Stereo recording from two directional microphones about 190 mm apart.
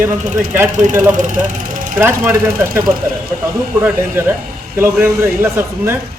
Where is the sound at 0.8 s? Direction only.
40° right (ahead or behind).